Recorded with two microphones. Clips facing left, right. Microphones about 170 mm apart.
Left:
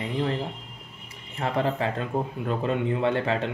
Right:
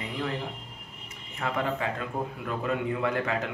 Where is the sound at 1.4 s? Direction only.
30° left (ahead or behind).